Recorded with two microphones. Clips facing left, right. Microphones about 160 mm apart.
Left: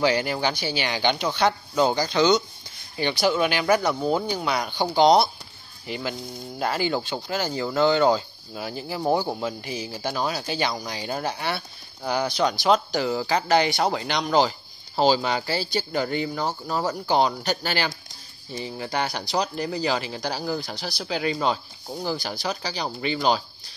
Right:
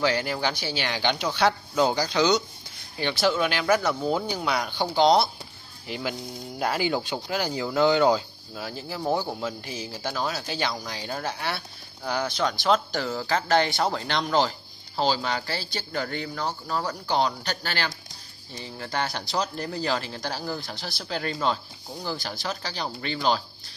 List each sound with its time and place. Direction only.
0.0 s speech: centre (ahead or behind)
3.0 s speech: centre (ahead or behind)
12.4 s speech: 15° left (ahead or behind)
13.2 s speech: 5° left (ahead or behind)